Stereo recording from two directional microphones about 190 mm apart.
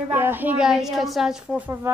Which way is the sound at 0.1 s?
10° right (ahead or behind).